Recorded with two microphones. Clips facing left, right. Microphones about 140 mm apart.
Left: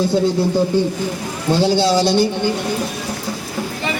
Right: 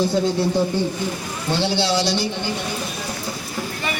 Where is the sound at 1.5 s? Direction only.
45° left (ahead or behind).